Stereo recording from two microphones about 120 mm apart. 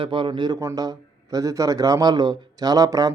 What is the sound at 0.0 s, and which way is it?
A man's voice, 45° right (ahead or behind).